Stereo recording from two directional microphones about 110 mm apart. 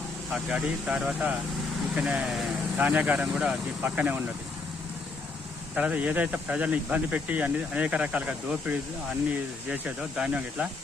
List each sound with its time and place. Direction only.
0.3 s speech: 10° right (ahead or behind)
5.7 s speech: 10° right (ahead or behind)